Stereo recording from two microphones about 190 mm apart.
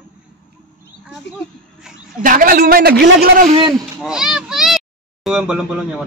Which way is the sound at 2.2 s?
45° right (ahead or behind).